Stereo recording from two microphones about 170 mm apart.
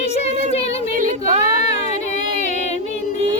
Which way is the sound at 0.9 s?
50° right (ahead or behind).